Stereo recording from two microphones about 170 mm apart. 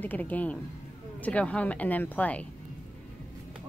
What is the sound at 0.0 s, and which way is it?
Speech, 10° left (ahead or behind).